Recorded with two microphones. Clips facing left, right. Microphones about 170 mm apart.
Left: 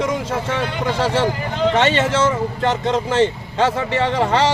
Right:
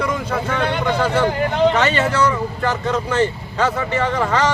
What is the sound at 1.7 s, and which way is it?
Speech, 25° left (ahead or behind).